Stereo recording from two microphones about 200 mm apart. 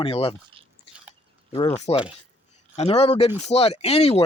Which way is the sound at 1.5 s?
30° left (ahead or behind).